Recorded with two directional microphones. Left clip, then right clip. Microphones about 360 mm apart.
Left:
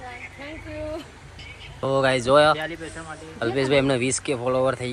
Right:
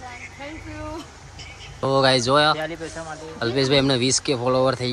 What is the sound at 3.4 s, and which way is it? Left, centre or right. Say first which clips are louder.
Speech: right 1 dB; centre.